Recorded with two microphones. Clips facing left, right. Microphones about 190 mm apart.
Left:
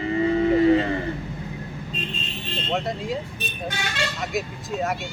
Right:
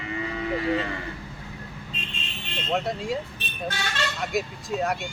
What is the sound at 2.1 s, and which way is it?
Vehicle, 35° left (ahead or behind).